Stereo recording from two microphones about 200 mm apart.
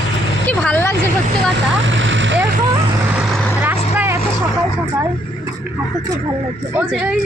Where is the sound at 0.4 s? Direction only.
5° left (ahead or behind).